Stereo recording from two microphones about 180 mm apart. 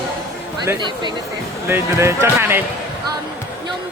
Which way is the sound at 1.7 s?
15° right (ahead or behind).